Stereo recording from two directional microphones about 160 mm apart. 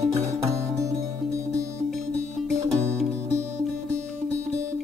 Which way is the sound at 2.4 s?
5° left (ahead or behind).